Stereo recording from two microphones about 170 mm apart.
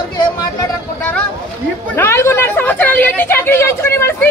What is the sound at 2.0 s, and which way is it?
A woman's voice, 15° left (ahead or behind).